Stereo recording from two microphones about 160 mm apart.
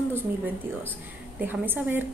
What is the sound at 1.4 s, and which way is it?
Speech, 10° right (ahead or behind).